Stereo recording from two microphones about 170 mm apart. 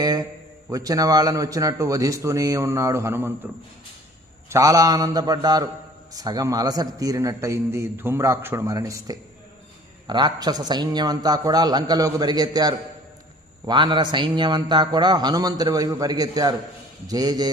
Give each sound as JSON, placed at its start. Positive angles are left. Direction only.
{"t": 0.0, "sound": "a man's voice", "side_deg": -25}